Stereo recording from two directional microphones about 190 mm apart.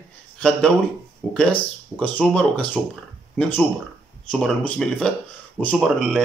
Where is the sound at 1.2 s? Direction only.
5° left (ahead or behind).